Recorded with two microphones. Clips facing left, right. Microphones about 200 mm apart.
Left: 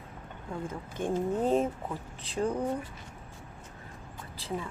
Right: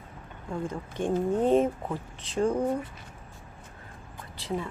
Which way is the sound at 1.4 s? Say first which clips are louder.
Right 5 dB; centre (ahead or behind).